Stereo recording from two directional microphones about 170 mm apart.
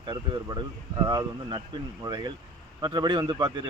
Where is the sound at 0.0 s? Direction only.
25° right (ahead or behind).